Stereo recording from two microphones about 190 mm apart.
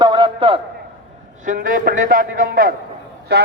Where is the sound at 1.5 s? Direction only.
45° right (ahead or behind).